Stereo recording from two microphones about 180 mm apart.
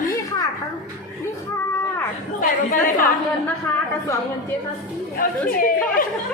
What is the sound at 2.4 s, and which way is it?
Speech, 50° left (ahead or behind).